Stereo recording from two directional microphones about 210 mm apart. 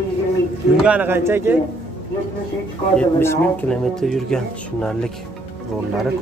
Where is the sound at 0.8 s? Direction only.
10° right (ahead or behind).